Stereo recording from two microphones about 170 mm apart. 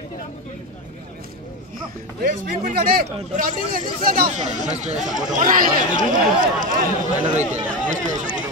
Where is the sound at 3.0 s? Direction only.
45° right (ahead or behind).